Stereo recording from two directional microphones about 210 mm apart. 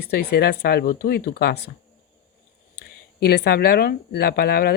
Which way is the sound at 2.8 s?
50° left (ahead or behind).